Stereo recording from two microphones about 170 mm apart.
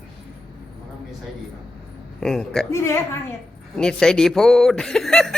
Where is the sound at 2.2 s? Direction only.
5° left (ahead or behind).